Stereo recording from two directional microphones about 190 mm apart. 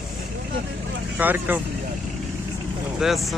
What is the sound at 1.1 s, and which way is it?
Speech, 10° right (ahead or behind).